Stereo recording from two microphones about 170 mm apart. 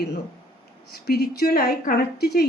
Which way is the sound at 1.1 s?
65° left (ahead or behind).